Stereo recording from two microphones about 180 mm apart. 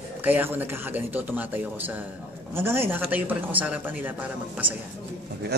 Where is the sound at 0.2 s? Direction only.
10° right (ahead or behind).